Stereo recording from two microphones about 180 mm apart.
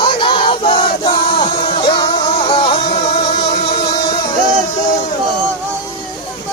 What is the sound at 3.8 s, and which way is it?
Music, 25° left (ahead or behind).